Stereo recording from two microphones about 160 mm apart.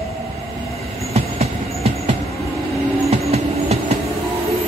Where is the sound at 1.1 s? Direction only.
40° right (ahead or behind).